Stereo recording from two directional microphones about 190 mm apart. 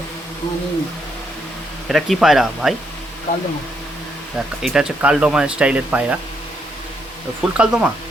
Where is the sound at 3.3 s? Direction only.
45° left (ahead or behind).